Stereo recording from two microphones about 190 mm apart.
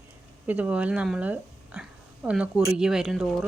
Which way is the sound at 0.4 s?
5° right (ahead or behind).